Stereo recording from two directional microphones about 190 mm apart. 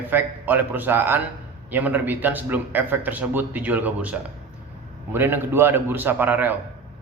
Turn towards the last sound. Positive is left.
turn(degrees=-10)  # may be behind; listen again after turning